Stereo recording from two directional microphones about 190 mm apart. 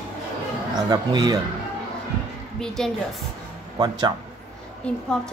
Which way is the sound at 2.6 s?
Centre (ahead or behind).